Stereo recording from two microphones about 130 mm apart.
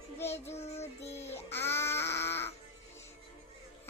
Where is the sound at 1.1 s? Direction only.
20° left (ahead or behind).